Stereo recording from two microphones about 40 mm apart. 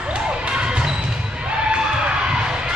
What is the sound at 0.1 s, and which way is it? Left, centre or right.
Basketball bounce, right.